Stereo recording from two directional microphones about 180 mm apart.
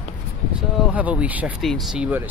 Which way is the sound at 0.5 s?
5° right (ahead or behind).